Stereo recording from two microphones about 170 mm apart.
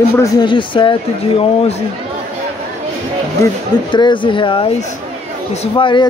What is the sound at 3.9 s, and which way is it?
Speech, 30° left (ahead or behind).